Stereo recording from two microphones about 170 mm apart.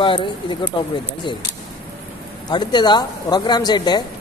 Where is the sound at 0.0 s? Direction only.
30° left (ahead or behind).